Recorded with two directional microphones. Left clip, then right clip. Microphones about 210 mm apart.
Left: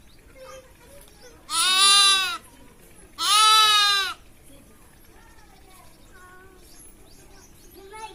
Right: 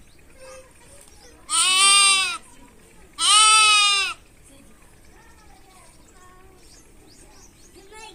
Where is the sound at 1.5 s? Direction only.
25° right (ahead or behind).